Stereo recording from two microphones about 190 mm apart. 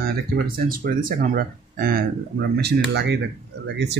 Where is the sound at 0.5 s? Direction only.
50° right (ahead or behind).